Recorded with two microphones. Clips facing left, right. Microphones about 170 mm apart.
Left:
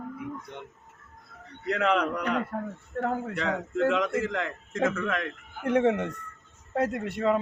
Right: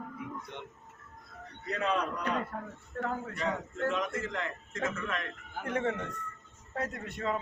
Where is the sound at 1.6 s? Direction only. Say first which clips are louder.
Left 6 dB; 70° left (ahead or behind).